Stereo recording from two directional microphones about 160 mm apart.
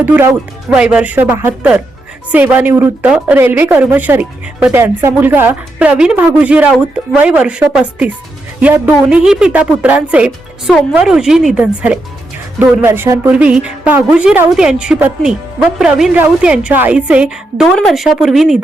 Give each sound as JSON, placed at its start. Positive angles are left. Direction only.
{"t": 0.0, "sound": "a woman's voice", "side_deg": -15}